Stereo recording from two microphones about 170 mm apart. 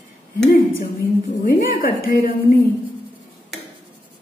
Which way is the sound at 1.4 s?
55° left (ahead or behind).